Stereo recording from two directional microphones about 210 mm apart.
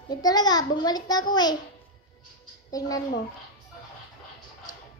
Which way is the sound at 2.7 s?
15° left (ahead or behind).